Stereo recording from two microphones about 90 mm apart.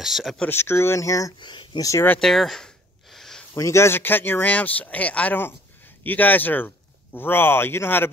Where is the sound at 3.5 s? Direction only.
35° left (ahead or behind).